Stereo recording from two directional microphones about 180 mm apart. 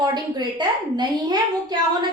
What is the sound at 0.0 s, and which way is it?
A woman's voice, 25° right (ahead or behind).